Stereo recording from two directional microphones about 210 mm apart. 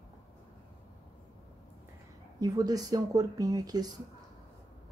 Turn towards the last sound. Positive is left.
turn(degrees=-20)  # may be behind; listen again after turning